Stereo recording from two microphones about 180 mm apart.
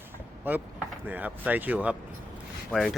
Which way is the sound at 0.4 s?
10° right (ahead or behind).